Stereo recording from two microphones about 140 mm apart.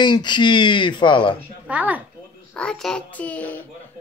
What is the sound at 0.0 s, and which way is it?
Speech, 35° left (ahead or behind).